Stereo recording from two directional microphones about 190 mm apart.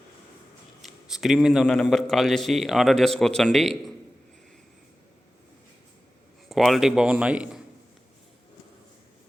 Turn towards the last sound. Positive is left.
turn(degrees=-5)  # may be behind; listen again after turning